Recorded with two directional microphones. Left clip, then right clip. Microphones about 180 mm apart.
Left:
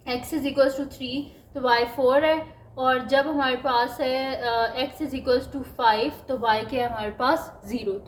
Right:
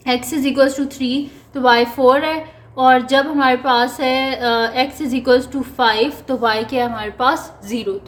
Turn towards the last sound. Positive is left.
turn(degrees=-15)  # may be behind; listen again after turning